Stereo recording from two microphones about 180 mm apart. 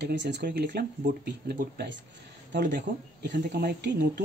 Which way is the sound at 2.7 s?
65° right (ahead or behind).